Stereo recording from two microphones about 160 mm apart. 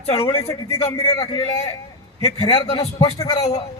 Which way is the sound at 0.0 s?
40° left (ahead or behind).